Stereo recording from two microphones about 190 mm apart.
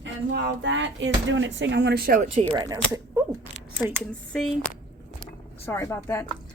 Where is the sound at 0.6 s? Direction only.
75° right (ahead or behind); by 2.2 s 50° right (ahead or behind).